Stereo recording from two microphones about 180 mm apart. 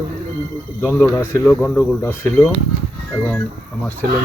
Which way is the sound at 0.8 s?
10° left (ahead or behind).